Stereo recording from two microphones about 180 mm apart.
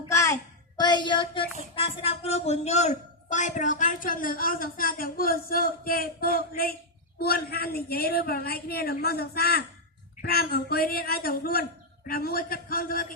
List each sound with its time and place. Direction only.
0.1 s a sound: 15° left (ahead or behind)
0.8 s child singing: 25° left (ahead or behind)
1.7 s a man's voice: 30° left (ahead or behind); by 13.1 s 55° left (ahead or behind)